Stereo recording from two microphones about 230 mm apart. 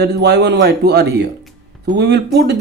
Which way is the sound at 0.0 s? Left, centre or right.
Right.